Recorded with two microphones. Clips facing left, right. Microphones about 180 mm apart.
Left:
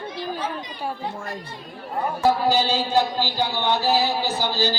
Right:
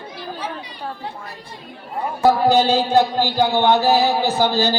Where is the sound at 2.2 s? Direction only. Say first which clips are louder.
Right 6 dB; 60° right (ahead or behind).